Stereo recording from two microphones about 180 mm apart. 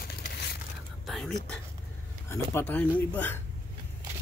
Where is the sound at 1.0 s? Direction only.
Centre (ahead or behind).